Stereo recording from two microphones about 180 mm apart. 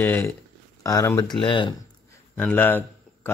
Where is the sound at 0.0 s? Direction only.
10° left (ahead or behind); by 1.8 s 25° left (ahead or behind).